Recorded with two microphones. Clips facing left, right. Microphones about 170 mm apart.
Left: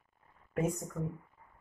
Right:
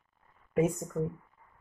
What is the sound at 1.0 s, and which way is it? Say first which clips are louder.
Speech: right 6 dB; 20° right (ahead or behind).